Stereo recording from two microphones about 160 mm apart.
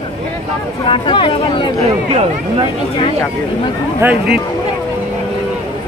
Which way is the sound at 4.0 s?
10° right (ahead or behind).